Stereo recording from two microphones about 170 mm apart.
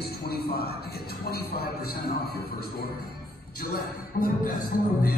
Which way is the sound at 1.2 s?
65° left (ahead or behind).